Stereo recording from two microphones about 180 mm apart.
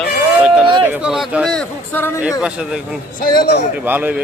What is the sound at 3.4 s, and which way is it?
Speech, 65° left (ahead or behind).